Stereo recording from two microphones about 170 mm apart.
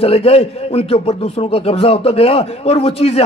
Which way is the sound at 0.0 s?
35° left (ahead or behind).